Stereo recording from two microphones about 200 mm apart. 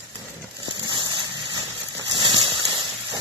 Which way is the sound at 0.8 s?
20° right (ahead or behind).